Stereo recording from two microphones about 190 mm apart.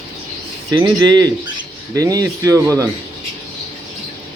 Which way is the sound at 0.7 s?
20° right (ahead or behind).